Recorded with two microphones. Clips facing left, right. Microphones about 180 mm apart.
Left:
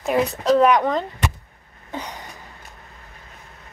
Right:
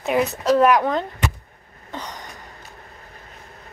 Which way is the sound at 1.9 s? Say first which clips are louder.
Left 2 dB; 10° left (ahead or behind).